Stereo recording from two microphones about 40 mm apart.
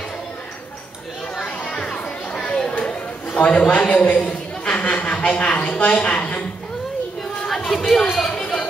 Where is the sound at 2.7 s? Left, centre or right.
Left.